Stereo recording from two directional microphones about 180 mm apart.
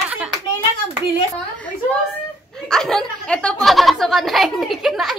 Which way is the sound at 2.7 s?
5° left (ahead or behind).